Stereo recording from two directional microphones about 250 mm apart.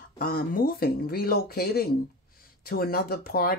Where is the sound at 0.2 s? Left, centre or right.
Left.